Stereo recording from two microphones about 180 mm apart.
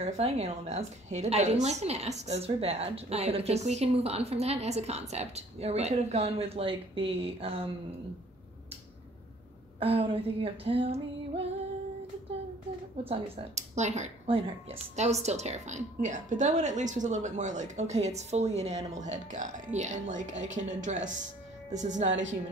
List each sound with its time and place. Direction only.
0.0 s speech: 35° right (ahead or behind)
9.8 s speech: 30° right (ahead or behind)
13.1 s a woman's voice: 35° right (ahead or behind)